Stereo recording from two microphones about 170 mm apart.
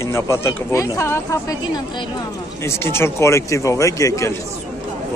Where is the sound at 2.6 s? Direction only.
15° left (ahead or behind).